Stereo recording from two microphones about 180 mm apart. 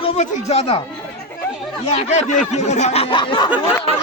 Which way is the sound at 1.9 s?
40° left (ahead or behind).